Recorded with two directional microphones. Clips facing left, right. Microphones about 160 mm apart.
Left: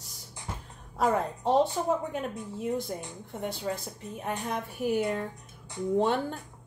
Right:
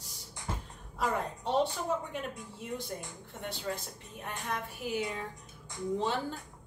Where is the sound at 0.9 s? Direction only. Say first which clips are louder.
Left 6 dB; 45° left (ahead or behind).